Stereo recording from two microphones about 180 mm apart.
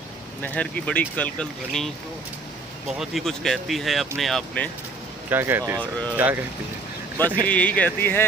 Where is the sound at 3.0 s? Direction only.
Centre (ahead or behind).